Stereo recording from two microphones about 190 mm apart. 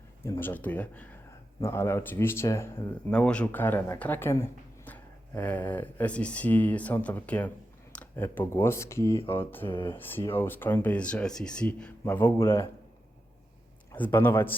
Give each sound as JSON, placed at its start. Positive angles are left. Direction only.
{"t": 0.2, "sound": "speech", "side_deg": 10}
{"t": 9.6, "sound": "speech", "side_deg": 25}
{"t": 10.1, "sound": "speech", "side_deg": 10}
{"t": 13.9, "sound": "speech", "side_deg": 10}